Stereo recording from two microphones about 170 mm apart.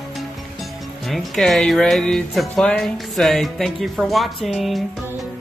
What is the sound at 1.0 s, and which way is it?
Speech, centre (ahead or behind).